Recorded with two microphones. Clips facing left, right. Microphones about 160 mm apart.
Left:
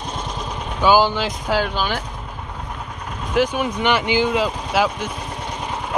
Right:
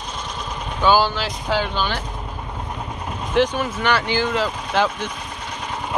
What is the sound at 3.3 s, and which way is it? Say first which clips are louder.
Speech: even; 15° left (ahead or behind).